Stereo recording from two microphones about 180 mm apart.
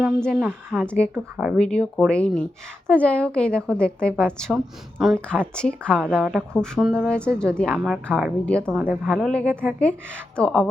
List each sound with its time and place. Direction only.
0.2 s a woman's voice: 5° left (ahead or behind)
1.1 s a woman's voice: 5° right (ahead or behind)
1.5 s a woman's voice: 5° left (ahead or behind)
8.7 s a woman's voice: 10° right (ahead or behind)